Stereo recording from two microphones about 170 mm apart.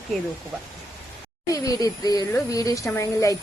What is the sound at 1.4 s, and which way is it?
A woman's voice, 20° left (ahead or behind).